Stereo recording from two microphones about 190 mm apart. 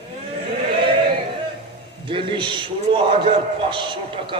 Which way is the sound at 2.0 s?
25° right (ahead or behind).